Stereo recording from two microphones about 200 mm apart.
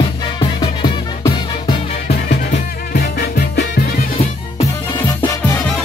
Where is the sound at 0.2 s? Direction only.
25° left (ahead or behind).